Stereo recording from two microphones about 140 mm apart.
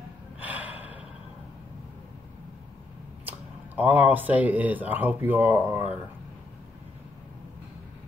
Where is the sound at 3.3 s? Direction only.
10° right (ahead or behind).